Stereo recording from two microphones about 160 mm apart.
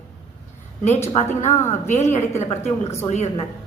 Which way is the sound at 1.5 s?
15° left (ahead or behind).